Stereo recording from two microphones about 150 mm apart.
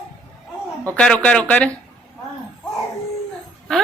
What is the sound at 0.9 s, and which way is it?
Speech, 5° left (ahead or behind).